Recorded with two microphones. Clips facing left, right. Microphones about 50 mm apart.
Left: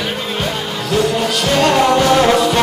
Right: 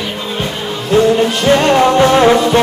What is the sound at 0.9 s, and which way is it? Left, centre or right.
Music, right.